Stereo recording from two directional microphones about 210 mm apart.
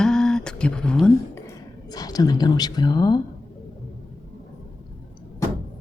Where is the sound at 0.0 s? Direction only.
5° left (ahead or behind); by 3.2 s 20° left (ahead or behind).